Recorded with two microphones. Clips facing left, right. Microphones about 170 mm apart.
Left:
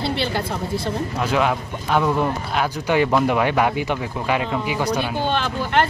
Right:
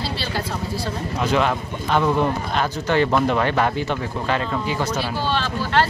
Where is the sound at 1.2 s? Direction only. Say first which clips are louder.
Right 1 dB; 5° left (ahead or behind).